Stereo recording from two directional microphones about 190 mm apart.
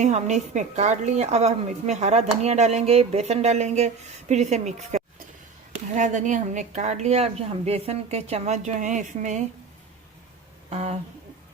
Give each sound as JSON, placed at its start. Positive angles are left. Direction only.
{"t": 0.0, "sound": "a woman's voice", "side_deg": -40}
{"t": 10.7, "sound": "speech", "side_deg": -35}